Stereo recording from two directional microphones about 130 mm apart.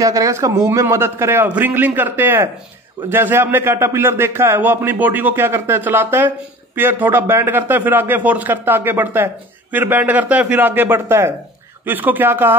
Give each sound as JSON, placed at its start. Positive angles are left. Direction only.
{"t": 0.0, "sound": "a man's voice", "side_deg": -25}